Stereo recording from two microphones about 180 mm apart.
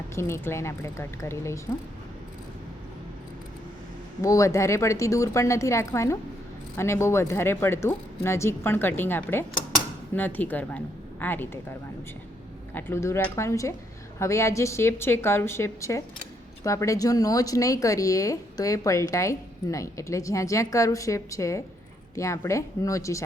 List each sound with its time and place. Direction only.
0.2 s speech: 15° left (ahead or behind)
4.2 s speech: 20° left (ahead or behind)
12.7 s speech: 15° left (ahead or behind)